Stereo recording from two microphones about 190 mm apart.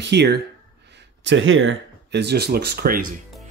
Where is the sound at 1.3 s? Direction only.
85° right; by 3.0 s 55° right (ahead or behind).